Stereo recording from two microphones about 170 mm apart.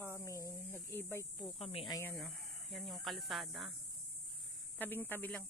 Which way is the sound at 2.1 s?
Centre (ahead or behind).